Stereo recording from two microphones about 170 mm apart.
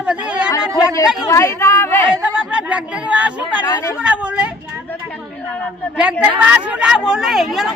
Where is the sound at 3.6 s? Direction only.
20° left (ahead or behind).